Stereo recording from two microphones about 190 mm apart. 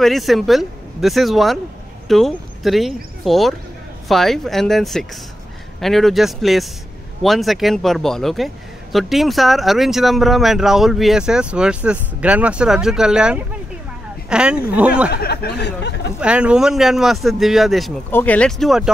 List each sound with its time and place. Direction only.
0.0 s speech: centre (ahead or behind)
15.0 s speech: 55° left (ahead or behind)
16.2 s speech: 5° right (ahead or behind)